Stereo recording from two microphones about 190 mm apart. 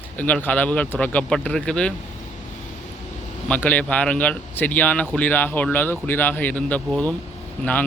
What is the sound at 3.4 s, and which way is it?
A man's voice, 10° left (ahead or behind).